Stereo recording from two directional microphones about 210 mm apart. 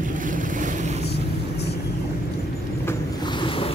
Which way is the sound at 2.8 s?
20° left (ahead or behind).